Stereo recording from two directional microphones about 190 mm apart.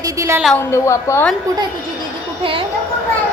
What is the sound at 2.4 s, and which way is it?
Speech, 30° right (ahead or behind).